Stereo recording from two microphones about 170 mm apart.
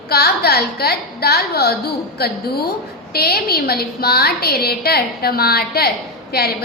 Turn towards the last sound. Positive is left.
turn(degrees=70)  # may be behind; listen again after turning